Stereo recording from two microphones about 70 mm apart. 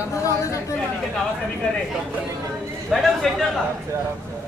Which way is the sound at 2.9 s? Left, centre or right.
Centre.